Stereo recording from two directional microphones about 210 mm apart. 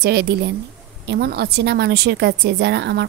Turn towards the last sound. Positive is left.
turn(degrees=-55)  # may be behind; listen again after turning